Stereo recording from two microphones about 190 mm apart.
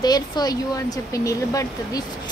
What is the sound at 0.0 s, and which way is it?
A woman's voice, 20° left (ahead or behind).